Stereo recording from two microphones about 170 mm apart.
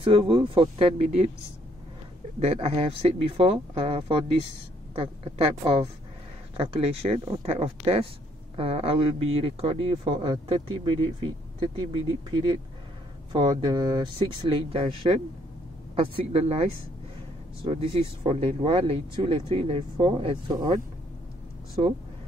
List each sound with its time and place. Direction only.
0.0 s speech: 30° right (ahead or behind)
2.4 s a woman's voice: 35° right (ahead or behind)
6.5 s speech: 35° right (ahead or behind)